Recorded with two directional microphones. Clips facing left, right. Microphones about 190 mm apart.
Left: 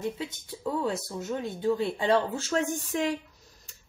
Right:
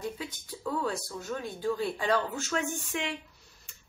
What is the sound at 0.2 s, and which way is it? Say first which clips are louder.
Speech: left 3 dB; 20° left (ahead or behind).